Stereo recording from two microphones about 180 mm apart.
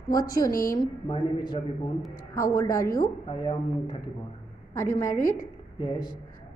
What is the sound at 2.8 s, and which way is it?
Speech, 55° left (ahead or behind).